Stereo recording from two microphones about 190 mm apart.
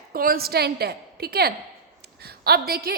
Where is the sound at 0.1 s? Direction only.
50° right (ahead or behind).